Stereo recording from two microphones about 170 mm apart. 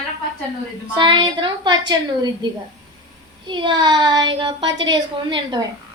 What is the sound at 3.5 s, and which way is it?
A woman's voice, 25° right (ahead or behind).